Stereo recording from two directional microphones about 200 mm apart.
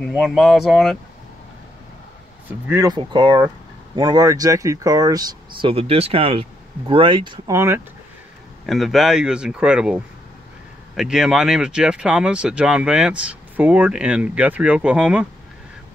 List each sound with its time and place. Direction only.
0.0 s speech: centre (ahead or behind)
2.7 s speech: 20° right (ahead or behind)
8.6 s speech: centre (ahead or behind)